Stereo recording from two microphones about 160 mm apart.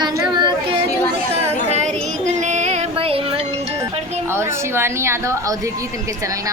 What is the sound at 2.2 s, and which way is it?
Music, 50° right (ahead or behind).